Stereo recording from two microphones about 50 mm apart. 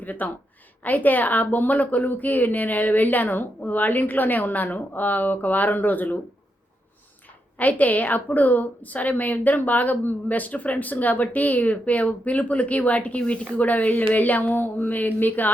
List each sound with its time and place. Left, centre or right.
0.0 s a woman's voice: left
7.6 s a woman's voice: left